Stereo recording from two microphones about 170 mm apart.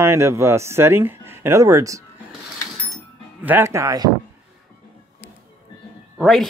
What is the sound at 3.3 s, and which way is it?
Speech, 10° right (ahead or behind).